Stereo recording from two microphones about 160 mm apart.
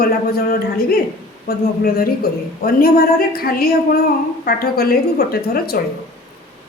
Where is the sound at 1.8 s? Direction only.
70° left (ahead or behind).